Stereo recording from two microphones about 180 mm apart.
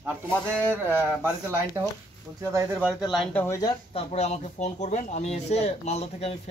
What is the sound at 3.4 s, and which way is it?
Speech, 15° left (ahead or behind).